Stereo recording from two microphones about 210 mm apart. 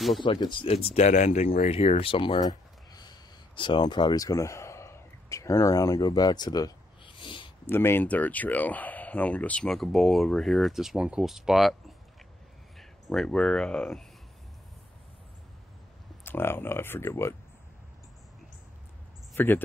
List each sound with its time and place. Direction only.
0.2 s speech: 25° left (ahead or behind)
7.7 s speech: 10° left (ahead or behind)
12.7 s speech: centre (ahead or behind)
16.3 s speech: 10° left (ahead or behind)
19.3 s speech: 10° left (ahead or behind)